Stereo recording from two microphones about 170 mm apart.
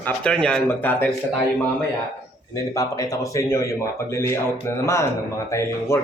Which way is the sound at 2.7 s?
20° left (ahead or behind).